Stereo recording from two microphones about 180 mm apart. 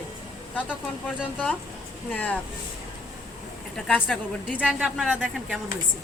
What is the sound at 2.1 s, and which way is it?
Speech, 10° left (ahead or behind).